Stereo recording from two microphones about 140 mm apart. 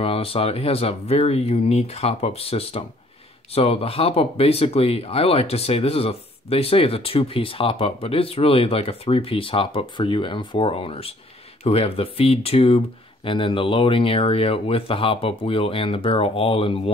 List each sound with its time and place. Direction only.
0.0 s speech: 45° left (ahead or behind)